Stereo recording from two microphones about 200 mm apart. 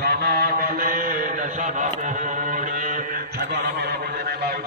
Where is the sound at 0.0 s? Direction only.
50° right (ahead or behind).